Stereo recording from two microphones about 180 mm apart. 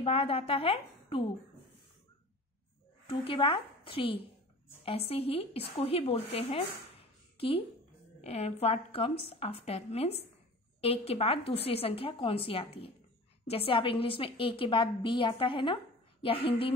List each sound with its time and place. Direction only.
0.0 s a woman's voice: 30° left (ahead or behind)
3.1 s a woman's voice: 30° left (ahead or behind)